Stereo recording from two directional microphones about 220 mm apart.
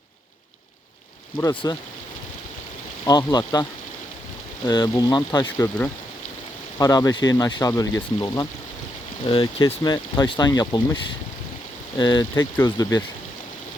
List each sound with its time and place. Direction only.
1.4 s speech: 15° left (ahead or behind)
3.1 s speech: 15° left (ahead or behind)